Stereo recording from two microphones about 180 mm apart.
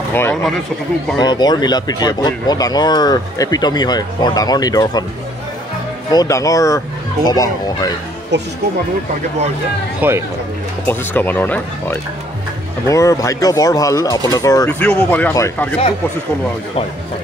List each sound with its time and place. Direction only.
0.1 s speech: 10° left (ahead or behind)
1.2 s speech: 25° left (ahead or behind)
6.1 s speech: 20° left (ahead or behind)
8.3 s speech: 75° right (ahead or behind)
9.9 s speech: 10° right (ahead or behind)
10.9 s speech: 10° left (ahead or behind)
14.7 s speech: 5° left (ahead or behind)